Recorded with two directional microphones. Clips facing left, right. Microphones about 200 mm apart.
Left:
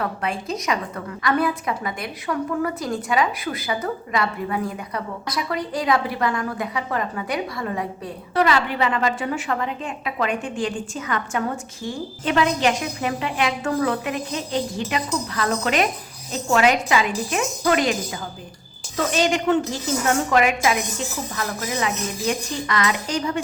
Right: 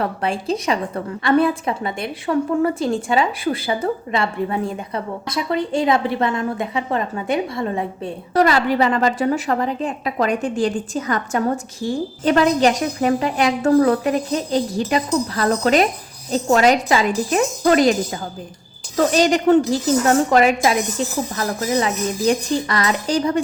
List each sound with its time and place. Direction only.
0.0 s a woman's voice: 30° right (ahead or behind)
8.3 s a woman's voice: 40° right (ahead or behind)
18.9 s a woman's voice: 40° right (ahead or behind)